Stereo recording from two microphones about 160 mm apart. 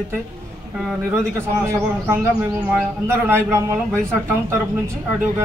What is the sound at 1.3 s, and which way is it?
A man's voice, 15° right (ahead or behind).